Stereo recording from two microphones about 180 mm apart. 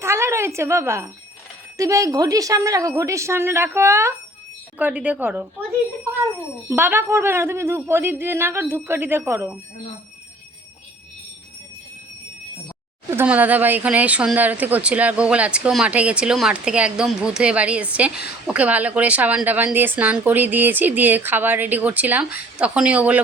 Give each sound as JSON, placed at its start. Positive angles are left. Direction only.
{"t": 0.0, "sound": "a woman's voice", "side_deg": -15}
{"t": 6.7, "sound": "speech", "side_deg": -10}
{"t": 13.1, "sound": "speech", "side_deg": -10}